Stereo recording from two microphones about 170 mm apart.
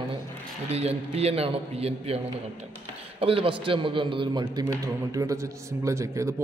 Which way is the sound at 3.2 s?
35° right (ahead or behind).